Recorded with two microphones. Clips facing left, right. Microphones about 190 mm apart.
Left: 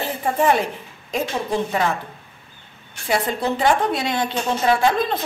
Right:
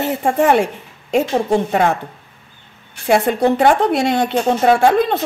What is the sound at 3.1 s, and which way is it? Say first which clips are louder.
A woman's voice: right 8 dB; 65° right (ahead or behind).